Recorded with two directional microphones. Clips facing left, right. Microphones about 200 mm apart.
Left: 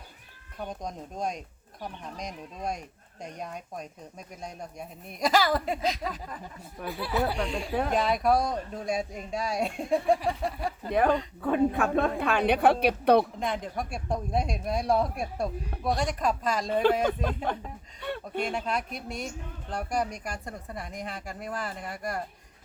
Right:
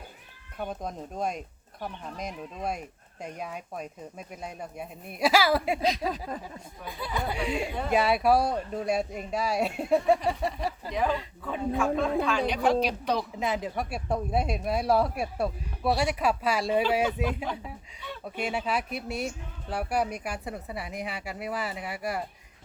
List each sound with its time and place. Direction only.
0.6 s a woman's voice: 5° right (ahead or behind)
6.0 s a sound: 35° right (ahead or behind)
6.9 s speech: 5° left (ahead or behind)
7.3 s a woman's voice: 10° right (ahead or behind)
10.8 s a woman's voice: 55° left (ahead or behind)
13.4 s speech: 5° right (ahead or behind)
17.1 s speech: 55° left (ahead or behind)
18.0 s a sound: 60° left (ahead or behind)
18.4 s a woman's voice: 5° right (ahead or behind)